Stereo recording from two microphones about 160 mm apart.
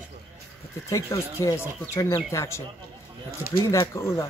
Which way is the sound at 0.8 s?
20° left (ahead or behind).